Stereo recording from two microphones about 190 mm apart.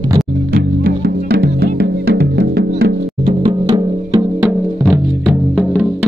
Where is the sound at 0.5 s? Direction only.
55° right (ahead or behind).